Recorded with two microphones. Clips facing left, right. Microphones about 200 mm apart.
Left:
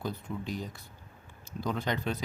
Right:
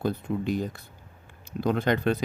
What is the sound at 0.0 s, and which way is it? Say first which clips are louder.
Speech: right 8 dB; 55° right (ahead or behind).